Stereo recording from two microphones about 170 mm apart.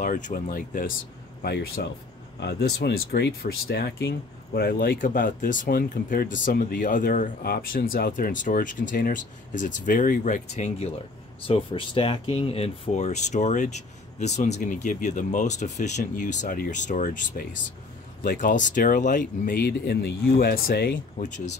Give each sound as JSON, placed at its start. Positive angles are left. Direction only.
{"t": 0.0, "sound": "speech", "side_deg": 50}
{"t": 1.4, "sound": "speech", "side_deg": 70}
{"t": 4.6, "sound": "speech", "side_deg": 60}
{"t": 11.4, "sound": "speech", "side_deg": 30}
{"t": 21.2, "sound": "speech", "side_deg": 45}